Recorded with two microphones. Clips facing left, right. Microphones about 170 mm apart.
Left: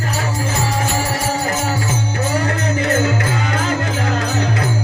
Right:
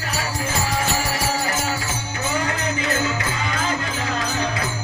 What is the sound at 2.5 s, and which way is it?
Music, 55° left (ahead or behind).